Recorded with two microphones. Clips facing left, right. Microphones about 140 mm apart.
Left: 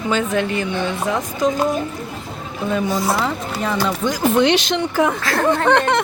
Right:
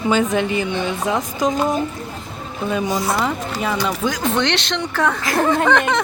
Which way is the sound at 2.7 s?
15° right (ahead or behind).